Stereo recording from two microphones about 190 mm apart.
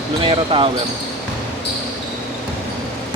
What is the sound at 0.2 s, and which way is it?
Speech, 25° right (ahead or behind).